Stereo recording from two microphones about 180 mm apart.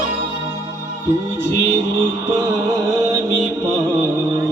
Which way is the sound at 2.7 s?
15° right (ahead or behind).